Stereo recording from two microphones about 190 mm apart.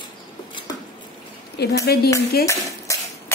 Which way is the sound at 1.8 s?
55° left (ahead or behind).